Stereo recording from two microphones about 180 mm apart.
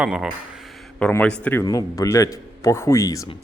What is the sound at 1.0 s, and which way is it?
Speech, 10° left (ahead or behind).